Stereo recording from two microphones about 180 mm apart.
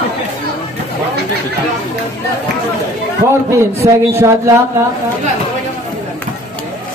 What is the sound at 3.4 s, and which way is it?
Speech, 15° right (ahead or behind).